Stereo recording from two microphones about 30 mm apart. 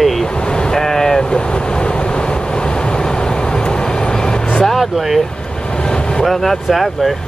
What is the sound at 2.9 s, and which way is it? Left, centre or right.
Vehicle, left.